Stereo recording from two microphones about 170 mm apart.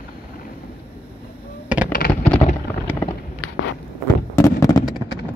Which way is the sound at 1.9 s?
60° left (ahead or behind).